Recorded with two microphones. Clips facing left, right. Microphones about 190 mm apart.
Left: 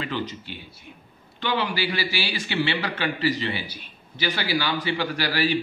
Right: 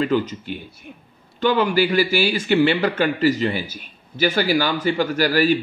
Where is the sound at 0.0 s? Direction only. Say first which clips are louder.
Right 9 dB; 45° right (ahead or behind).